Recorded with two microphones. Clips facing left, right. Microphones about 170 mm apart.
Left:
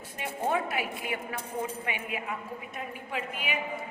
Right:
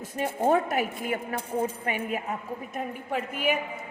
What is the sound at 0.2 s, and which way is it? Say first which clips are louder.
A woman's voice: right 6 dB; 45° right (ahead or behind).